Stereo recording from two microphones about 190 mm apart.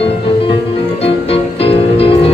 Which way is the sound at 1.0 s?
30° left (ahead or behind).